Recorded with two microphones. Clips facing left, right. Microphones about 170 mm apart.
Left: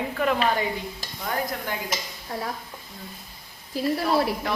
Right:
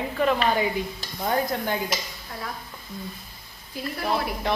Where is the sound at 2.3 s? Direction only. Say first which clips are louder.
Left 5 dB; 40° left (ahead or behind).